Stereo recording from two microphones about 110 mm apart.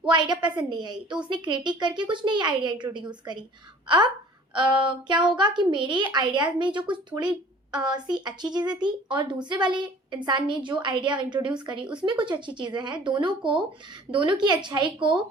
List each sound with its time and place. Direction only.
0.0 s a woman's voice: 40° right (ahead or behind)
11.8 s speech: 10° right (ahead or behind)
12.0 s a woman's voice: 45° right (ahead or behind)